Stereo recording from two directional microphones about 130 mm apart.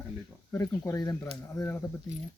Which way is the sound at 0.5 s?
20° left (ahead or behind).